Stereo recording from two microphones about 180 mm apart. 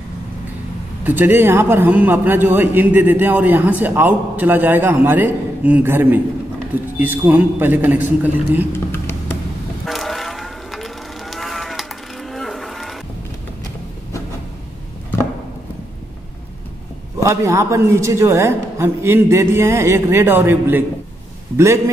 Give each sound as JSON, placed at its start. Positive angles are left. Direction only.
{"t": 1.0, "sound": "a man's voice", "side_deg": -10}
{"t": 8.7, "sound": "a sound", "side_deg": 15}
{"t": 9.8, "sound": "livestock", "side_deg": 0}
{"t": 17.2, "sound": "a man's voice", "side_deg": -15}